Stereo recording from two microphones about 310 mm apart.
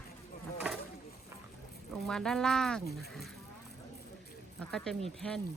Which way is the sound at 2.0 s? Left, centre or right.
Centre.